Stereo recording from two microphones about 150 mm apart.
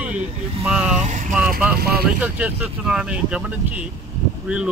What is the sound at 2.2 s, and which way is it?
Speech, 10° right (ahead or behind).